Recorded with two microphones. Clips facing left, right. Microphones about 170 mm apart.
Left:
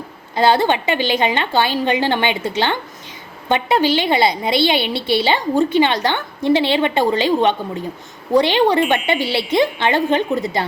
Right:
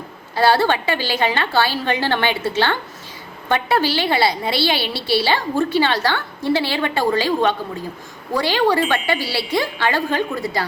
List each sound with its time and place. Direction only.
0.3 s a woman's voice: 20° left (ahead or behind)